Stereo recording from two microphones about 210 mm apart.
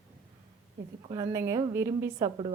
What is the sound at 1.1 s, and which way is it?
Speech, 15° right (ahead or behind).